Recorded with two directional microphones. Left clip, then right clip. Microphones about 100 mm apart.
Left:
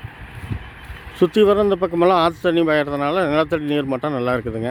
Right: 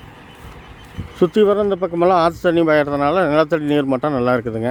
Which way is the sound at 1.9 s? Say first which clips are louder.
Right 3 dB; 5° left (ahead or behind).